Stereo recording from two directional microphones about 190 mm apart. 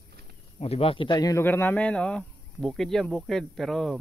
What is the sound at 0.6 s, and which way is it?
Speech, 30° left (ahead or behind).